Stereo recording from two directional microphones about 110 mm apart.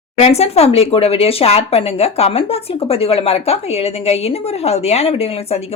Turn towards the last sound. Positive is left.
turn(degrees=70)  # may be behind; listen again after turning